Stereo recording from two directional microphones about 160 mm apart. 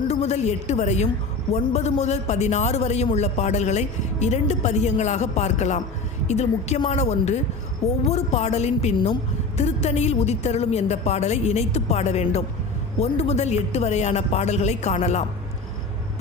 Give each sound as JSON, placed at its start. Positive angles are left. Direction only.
{"t": 0.1, "sound": "a man's voice", "side_deg": 40}